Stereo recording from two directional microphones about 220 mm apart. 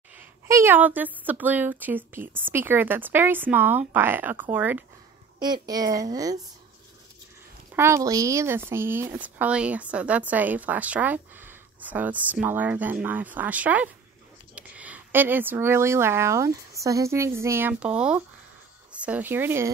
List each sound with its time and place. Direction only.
0.5 s speech: 10° right (ahead or behind)
5.4 s speech: 20° right (ahead or behind)
7.7 s speech: 10° right (ahead or behind)